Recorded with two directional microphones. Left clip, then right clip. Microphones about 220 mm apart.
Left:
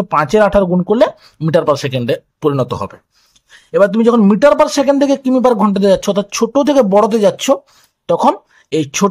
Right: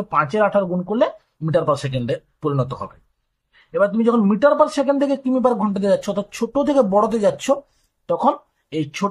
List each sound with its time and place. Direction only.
0.1 s a man's voice: 45° left (ahead or behind)